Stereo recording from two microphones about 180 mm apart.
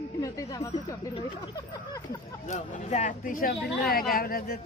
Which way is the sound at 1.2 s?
25° left (ahead or behind).